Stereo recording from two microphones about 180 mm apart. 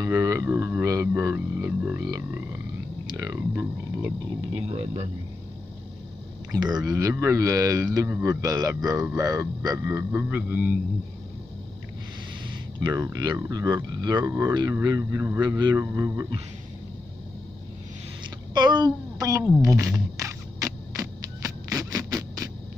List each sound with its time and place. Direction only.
0.0 s speech: 15° right (ahead or behind)
2.0 s music: 15° right (ahead or behind)
3.1 s speech: 20° right (ahead or behind)
4.6 s speech: 35° right (ahead or behind)
6.5 s speech: 20° right (ahead or behind)
12.8 s speech: 20° right (ahead or behind)
18.5 s a woman's voice: 25° right (ahead or behind)
19.6 s a sound: 15° right (ahead or behind)